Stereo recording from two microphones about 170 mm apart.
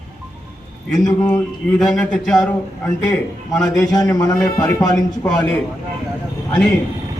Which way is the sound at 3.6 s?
20° left (ahead or behind).